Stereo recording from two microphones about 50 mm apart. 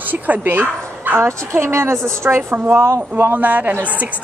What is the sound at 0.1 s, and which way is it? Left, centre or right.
Speech, right.